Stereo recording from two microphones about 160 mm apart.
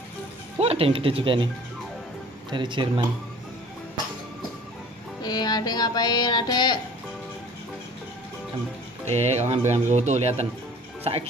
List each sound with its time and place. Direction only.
0.6 s speech: 40° right (ahead or behind)
2.5 s speech: 30° right (ahead or behind)
5.2 s music: 25° left (ahead or behind)
9.1 s speech: 40° right (ahead or behind)